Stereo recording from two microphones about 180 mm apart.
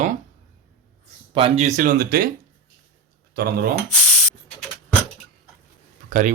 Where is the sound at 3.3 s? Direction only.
60° right (ahead or behind).